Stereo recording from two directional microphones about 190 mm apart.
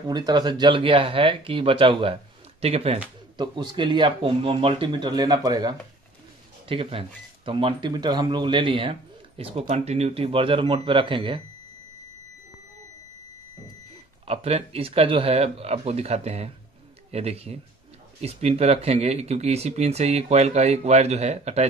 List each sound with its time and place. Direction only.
0.0 s speech: 20° right (ahead or behind)
14.2 s speech: 30° right (ahead or behind)